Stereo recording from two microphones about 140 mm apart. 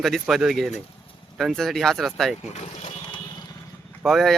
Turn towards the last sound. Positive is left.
turn(degrees=0)  # may be behind; listen again after turning